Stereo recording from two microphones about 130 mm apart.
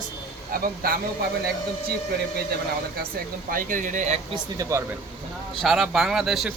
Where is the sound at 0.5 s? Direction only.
90° right.